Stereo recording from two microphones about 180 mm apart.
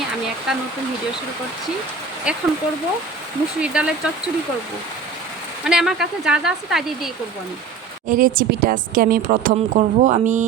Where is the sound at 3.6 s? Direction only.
5° right (ahead or behind).